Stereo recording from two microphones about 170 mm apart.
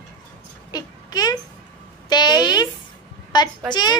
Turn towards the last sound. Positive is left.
turn(degrees=25)  # may be behind; listen again after turning